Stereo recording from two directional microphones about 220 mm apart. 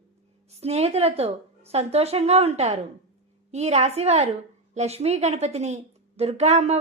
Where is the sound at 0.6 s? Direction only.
30° right (ahead or behind).